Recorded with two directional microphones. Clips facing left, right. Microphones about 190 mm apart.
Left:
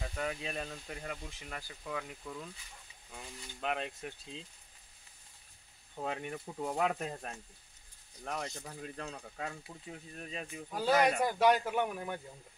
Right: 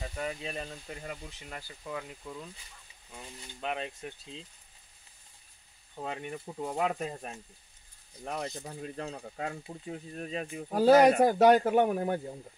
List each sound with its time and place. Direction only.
0.0 s speech: 5° right (ahead or behind)
5.9 s speech: centre (ahead or behind)
8.2 s speech: 25° right (ahead or behind)
11.1 s speech: 50° right (ahead or behind)